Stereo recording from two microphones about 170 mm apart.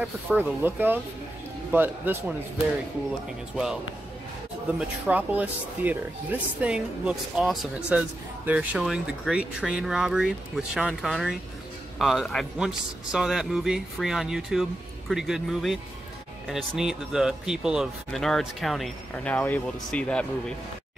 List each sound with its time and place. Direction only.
0.4 s speech: 10° right (ahead or behind)
4.7 s speech: 10° right (ahead or behind)